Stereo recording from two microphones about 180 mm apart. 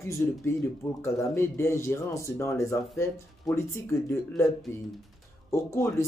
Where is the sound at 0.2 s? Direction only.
10° left (ahead or behind).